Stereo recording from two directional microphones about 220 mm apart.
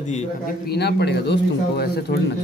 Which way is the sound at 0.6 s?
50° left (ahead or behind).